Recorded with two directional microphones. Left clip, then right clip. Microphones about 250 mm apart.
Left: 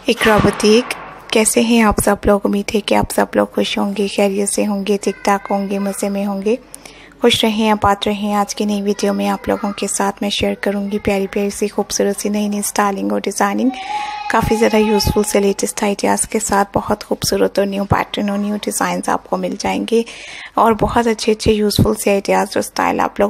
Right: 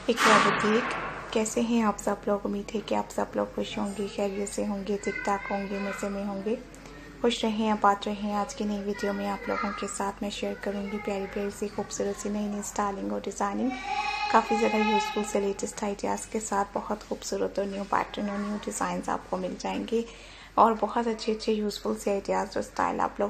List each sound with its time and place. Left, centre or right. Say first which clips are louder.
1.3 s a woman's voice: left 15 dB; left